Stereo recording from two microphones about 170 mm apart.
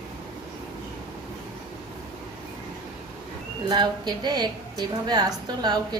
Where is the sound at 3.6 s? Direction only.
25° right (ahead or behind).